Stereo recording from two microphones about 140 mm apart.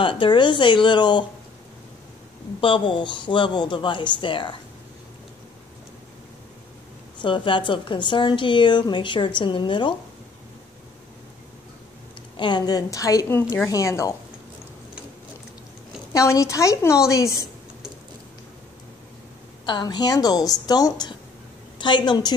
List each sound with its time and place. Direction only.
0.0 s a woman's voice: 35° left (ahead or behind)
2.6 s a woman's voice: 40° left (ahead or behind)
7.2 s a woman's voice: 35° left (ahead or behind)
12.4 s a woman's voice: 30° left (ahead or behind)
16.1 s a woman's voice: 20° left (ahead or behind)
19.6 s a woman's voice: 30° left (ahead or behind)